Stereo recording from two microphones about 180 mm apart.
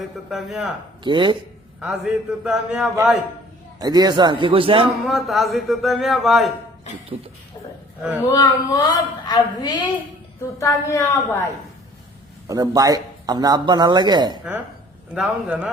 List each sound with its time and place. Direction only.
0.3 s speech: centre (ahead or behind)
1.0 s speech: 25° right (ahead or behind)
1.8 s speech: 5° right (ahead or behind)
3.8 s speech: 20° right (ahead or behind)
5.0 s speech: centre (ahead or behind)
8.3 s a woman's voice: 20° left (ahead or behind)
12.5 s speech: 20° right (ahead or behind)
15.1 s speech: 5° right (ahead or behind)